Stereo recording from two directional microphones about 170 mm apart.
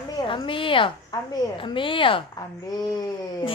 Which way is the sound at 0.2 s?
30° left (ahead or behind).